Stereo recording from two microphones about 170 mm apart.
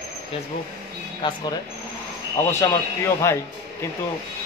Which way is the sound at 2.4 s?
15° left (ahead or behind).